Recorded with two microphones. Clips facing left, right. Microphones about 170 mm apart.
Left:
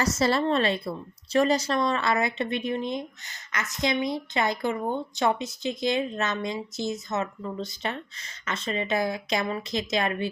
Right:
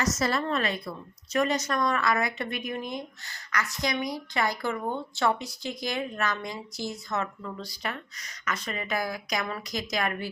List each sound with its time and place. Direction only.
0.0 s a woman's voice: 30° left (ahead or behind)